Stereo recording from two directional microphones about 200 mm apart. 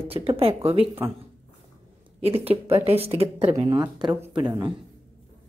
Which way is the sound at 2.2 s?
30° right (ahead or behind).